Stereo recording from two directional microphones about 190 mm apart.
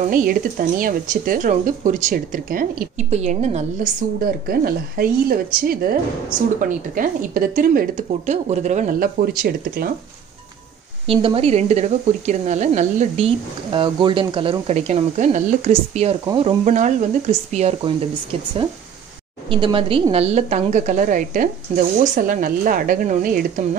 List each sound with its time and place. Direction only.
0.1 s speech: 45° right (ahead or behind)
4.0 s speech: 50° right (ahead or behind)
11.1 s speech: 30° right (ahead or behind)
19.5 s speech: 25° right (ahead or behind); by 23.8 s 45° right (ahead or behind)